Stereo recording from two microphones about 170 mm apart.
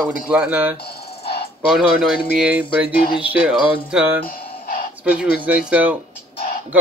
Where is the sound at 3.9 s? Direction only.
5° right (ahead or behind).